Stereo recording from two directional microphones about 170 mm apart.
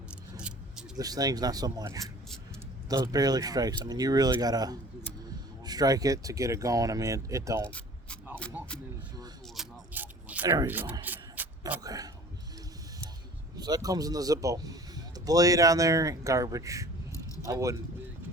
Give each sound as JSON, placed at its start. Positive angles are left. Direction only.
{"t": 0.3, "sound": "keys jangling", "side_deg": -5}
{"t": 0.9, "sound": "speech", "side_deg": -20}
{"t": 7.7, "sound": "keys jangling", "side_deg": 5}
{"t": 9.6, "sound": "a sound", "side_deg": -10}
{"t": 10.5, "sound": "speech", "side_deg": -15}
{"t": 11.0, "sound": "mechanisms", "side_deg": -10}
{"t": 11.8, "sound": "a man's voice", "side_deg": -20}
{"t": 13.6, "sound": "speech", "side_deg": -20}